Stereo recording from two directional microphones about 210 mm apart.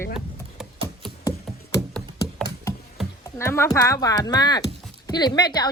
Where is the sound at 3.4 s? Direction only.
10° left (ahead or behind).